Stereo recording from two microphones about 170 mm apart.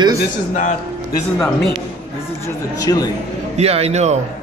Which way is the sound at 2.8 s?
20° left (ahead or behind).